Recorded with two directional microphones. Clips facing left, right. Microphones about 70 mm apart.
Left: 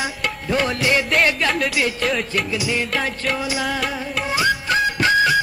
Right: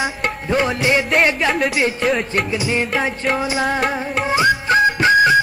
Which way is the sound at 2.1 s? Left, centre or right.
Right.